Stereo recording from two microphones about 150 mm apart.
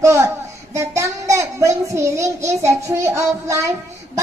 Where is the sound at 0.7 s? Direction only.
20° right (ahead or behind).